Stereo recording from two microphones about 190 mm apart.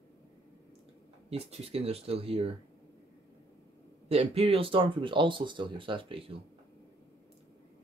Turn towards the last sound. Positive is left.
turn(degrees=-30)  # may be behind; listen again after turning